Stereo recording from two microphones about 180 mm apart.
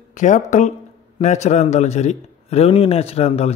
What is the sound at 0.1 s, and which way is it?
A man's voice, 40° left (ahead or behind).